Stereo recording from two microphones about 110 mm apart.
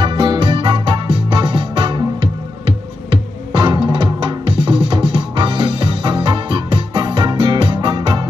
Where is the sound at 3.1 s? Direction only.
45° right (ahead or behind).